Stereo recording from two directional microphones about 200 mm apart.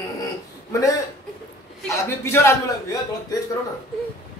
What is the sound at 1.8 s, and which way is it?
Speech, 15° left (ahead or behind).